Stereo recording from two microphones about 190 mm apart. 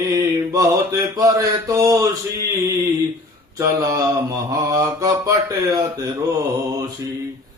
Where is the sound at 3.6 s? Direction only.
15° right (ahead or behind).